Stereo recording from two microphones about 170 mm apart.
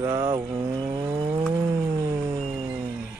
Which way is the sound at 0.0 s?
25° right (ahead or behind).